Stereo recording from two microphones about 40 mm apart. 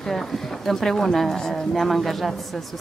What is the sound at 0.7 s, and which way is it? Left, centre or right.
A woman's voice, centre.